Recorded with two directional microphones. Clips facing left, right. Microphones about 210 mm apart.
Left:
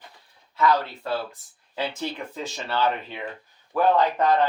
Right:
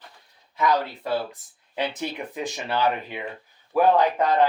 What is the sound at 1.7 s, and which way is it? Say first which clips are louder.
A man's voice: right 1 dB; 20° right (ahead or behind).